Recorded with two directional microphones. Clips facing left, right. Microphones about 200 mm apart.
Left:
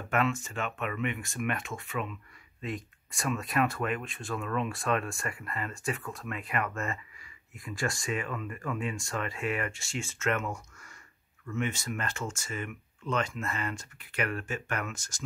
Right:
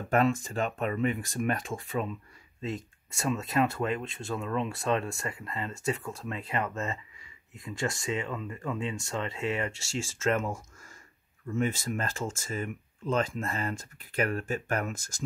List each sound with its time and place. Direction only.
0.1 s speech: 35° right (ahead or behind)
11.4 s speech: 35° right (ahead or behind)